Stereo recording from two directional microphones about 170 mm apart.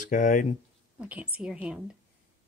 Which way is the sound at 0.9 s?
10° right (ahead or behind).